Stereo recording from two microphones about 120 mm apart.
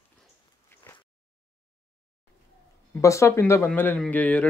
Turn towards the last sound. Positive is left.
turn(degrees=10)  # may be behind; listen again after turning